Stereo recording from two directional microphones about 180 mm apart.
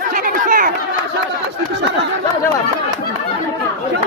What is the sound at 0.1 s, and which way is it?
Chatter, 50° right (ahead or behind).